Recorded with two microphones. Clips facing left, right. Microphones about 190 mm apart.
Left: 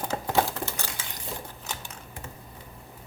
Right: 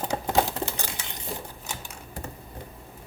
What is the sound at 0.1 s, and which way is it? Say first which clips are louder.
Crumpling: right 1 dB; 20° right (ahead or behind).